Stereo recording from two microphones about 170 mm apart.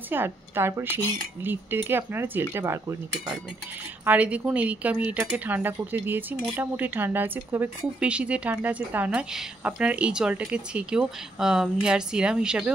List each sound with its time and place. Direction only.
0.1 s a woman's voice: 15° right (ahead or behind)
4.0 s a woman's voice: 10° right (ahead or behind)